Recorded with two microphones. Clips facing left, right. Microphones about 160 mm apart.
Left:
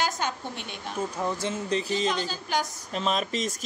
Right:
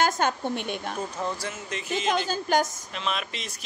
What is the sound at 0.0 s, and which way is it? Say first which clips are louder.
Speech: right 5 dB; 55° right (ahead or behind).